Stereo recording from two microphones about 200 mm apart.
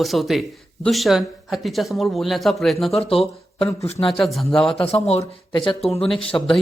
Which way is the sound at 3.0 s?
30° left (ahead or behind).